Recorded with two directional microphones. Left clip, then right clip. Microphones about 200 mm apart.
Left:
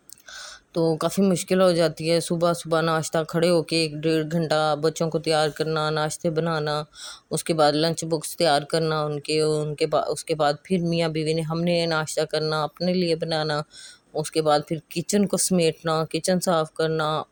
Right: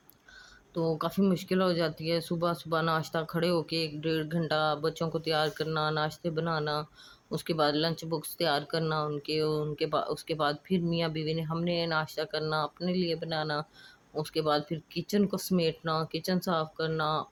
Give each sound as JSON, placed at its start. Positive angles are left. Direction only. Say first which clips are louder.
{"t": 0.7, "sound": "speech", "louder": "left 8 dB", "side_deg": 35}